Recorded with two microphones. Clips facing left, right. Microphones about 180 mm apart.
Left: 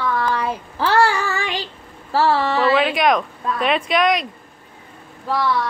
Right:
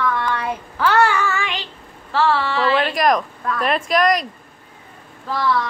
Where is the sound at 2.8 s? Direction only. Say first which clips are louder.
Left 1 dB; centre (ahead or behind).